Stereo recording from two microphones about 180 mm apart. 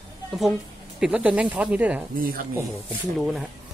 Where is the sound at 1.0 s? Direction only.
5° right (ahead or behind).